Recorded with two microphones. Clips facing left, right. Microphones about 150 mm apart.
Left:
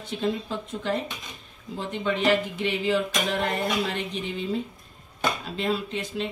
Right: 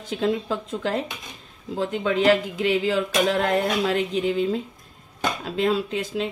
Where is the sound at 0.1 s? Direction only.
90° right.